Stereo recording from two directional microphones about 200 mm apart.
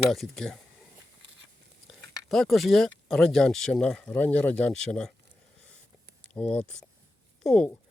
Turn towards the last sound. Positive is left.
turn(degrees=5)  # may be behind; listen again after turning